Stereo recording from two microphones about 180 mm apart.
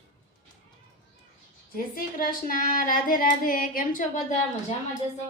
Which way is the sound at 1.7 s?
50° left (ahead or behind).